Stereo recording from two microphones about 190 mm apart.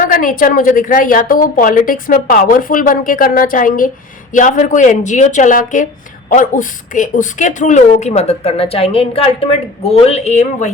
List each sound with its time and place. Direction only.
0.0 s a woman's voice: 45° left (ahead or behind)